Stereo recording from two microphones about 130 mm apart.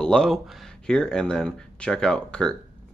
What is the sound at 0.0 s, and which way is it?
Speech, 5° left (ahead or behind).